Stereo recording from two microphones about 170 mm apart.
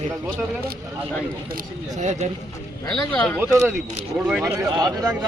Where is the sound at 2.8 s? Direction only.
5° left (ahead or behind).